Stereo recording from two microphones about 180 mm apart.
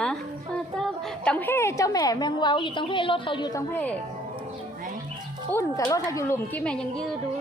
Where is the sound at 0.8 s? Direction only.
5° left (ahead or behind); by 3.6 s 25° left (ahead or behind).